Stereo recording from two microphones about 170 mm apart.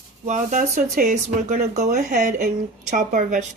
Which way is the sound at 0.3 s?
45° right (ahead or behind).